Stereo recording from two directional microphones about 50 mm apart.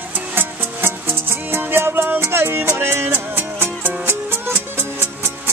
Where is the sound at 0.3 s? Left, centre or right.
Right.